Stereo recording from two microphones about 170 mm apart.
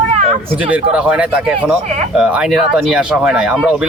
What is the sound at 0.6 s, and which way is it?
Speech, 5° right (ahead or behind).